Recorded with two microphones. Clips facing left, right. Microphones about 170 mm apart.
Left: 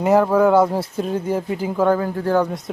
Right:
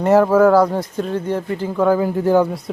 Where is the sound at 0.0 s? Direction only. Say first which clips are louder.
Right 3 dB; centre (ahead or behind).